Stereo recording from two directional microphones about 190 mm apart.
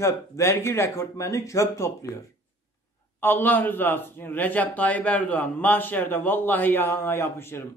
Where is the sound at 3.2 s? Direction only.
10° left (ahead or behind).